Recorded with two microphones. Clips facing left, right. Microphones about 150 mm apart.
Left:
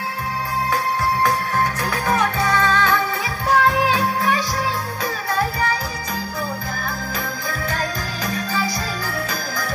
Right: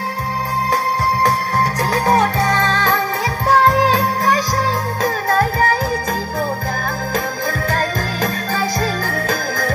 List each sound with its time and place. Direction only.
1.8 s music: 35° right (ahead or behind)
7.7 s jingle bell: 50° right (ahead or behind)